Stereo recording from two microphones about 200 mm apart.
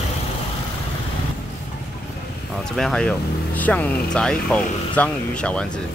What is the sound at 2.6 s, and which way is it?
Speech, 5° left (ahead or behind).